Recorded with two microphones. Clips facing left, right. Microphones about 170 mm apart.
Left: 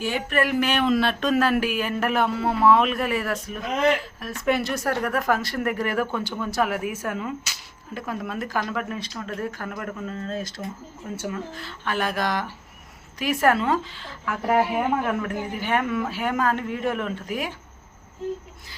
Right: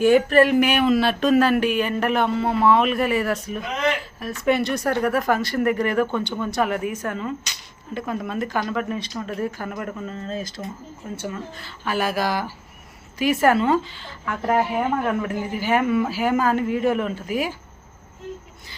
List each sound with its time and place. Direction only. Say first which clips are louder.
0.3 s speech: right 7 dB; 30° right (ahead or behind)
0.6 s speech: right 3 dB; 10° right (ahead or behind)